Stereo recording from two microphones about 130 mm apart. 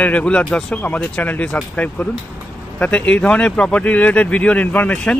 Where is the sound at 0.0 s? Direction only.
10° left (ahead or behind).